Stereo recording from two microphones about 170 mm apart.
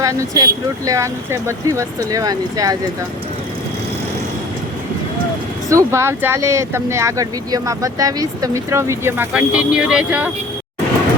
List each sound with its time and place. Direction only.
0.0 s speech: 20° right (ahead or behind)
5.6 s speech: 15° right (ahead or behind)